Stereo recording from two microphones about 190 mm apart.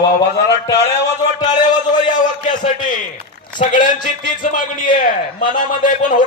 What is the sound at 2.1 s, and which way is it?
A man's voice, 45° left (ahead or behind).